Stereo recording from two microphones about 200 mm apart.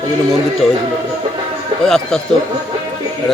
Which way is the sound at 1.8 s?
Centre (ahead or behind).